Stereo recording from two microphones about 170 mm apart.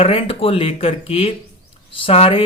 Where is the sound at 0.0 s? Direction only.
35° left (ahead or behind).